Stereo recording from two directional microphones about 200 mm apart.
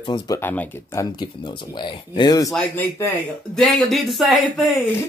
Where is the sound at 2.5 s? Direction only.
5° left (ahead or behind).